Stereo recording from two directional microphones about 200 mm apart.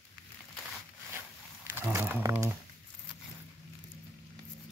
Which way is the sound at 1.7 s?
10° right (ahead or behind).